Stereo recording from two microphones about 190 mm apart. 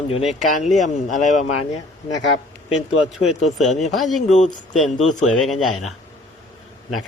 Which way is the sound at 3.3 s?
35° left (ahead or behind).